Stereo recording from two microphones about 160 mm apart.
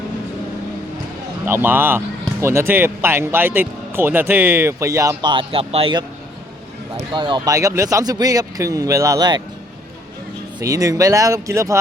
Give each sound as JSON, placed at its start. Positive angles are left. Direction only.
{"t": 1.5, "sound": "speech", "side_deg": -15}
{"t": 5.3, "sound": "a man's voice", "side_deg": -35}
{"t": 7.1, "sound": "speech", "side_deg": -30}
{"t": 10.6, "sound": "speech", "side_deg": -20}